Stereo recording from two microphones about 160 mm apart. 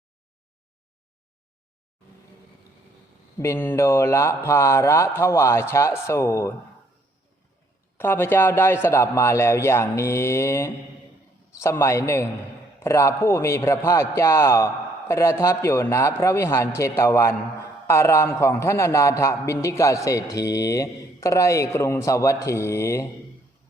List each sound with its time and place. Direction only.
3.3 s a man's voice: 15° left (ahead or behind)
7.9 s a man's voice: 15° left (ahead or behind)